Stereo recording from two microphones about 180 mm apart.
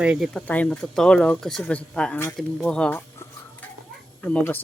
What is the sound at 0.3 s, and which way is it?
Speech, 10° left (ahead or behind).